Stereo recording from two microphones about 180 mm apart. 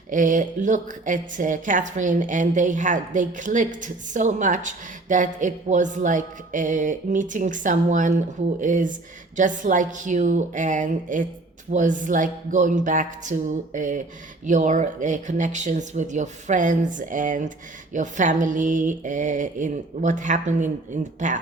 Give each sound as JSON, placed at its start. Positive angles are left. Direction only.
{"t": 0.1, "sound": "a woman's voice", "side_deg": -45}